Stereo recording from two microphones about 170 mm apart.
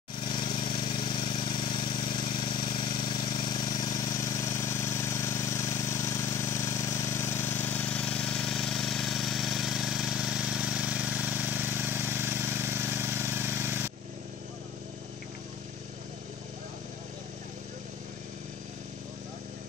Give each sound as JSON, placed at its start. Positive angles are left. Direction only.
{"t": 0.3, "sound": "vehicle", "side_deg": 25}